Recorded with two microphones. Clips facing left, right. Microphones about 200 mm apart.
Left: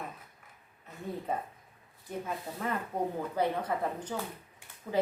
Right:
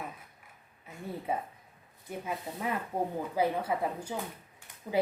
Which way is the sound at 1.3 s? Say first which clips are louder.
Right 1 dB; 10° right (ahead or behind).